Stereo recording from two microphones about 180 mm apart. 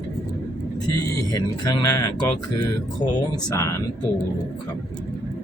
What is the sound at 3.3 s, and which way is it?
Speech, 15° left (ahead or behind).